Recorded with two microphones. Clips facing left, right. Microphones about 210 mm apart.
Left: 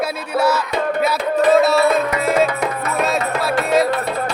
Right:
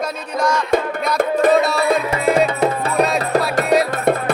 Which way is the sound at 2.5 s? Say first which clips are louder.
Right 3 dB; 30° right (ahead or behind).